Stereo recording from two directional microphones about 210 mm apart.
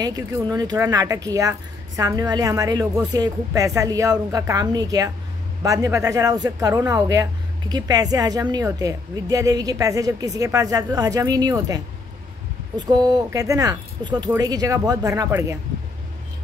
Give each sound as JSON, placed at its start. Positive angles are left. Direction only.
{"t": 0.0, "sound": "a woman's voice", "side_deg": -20}